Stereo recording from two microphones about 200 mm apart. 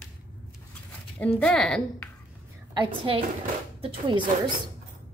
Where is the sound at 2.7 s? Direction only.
25° right (ahead or behind).